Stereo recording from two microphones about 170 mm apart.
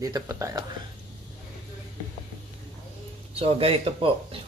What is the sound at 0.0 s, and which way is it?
Speech, 20° right (ahead or behind).